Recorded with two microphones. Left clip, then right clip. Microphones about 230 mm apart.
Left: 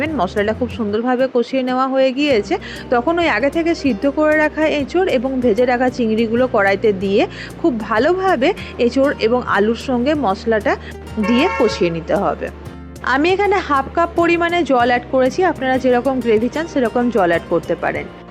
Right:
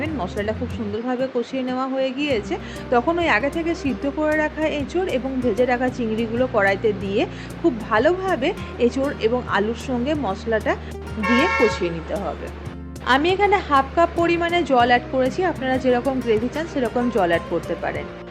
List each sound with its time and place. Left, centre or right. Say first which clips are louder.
0.0 s speech: left 7 dB; left